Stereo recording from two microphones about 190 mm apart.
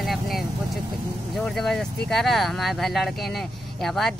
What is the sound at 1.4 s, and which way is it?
Speech, centre (ahead or behind).